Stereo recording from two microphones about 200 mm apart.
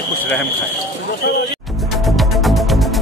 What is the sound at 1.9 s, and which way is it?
Music, centre (ahead or behind).